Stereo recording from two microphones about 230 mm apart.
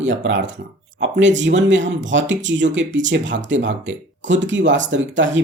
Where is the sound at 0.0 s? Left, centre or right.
Right.